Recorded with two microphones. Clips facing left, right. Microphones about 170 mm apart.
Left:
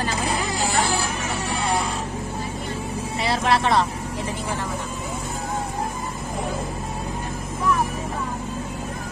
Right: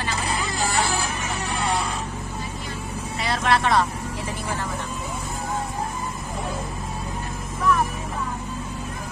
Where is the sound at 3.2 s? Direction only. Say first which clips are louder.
Left 1 dB; 30° left (ahead or behind).